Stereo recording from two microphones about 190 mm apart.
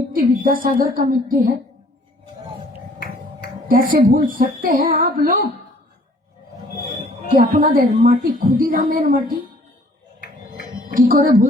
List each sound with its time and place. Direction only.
0.1 s a woman's voice: 45° right (ahead or behind)
3.7 s a woman's voice: 50° right (ahead or behind)
7.3 s a woman's voice: 45° right (ahead or behind)
10.9 s a woman's voice: 50° right (ahead or behind)